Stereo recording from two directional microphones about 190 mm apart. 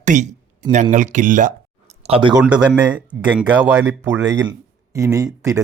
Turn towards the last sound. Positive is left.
turn(degrees=-15)  # may be behind; listen again after turning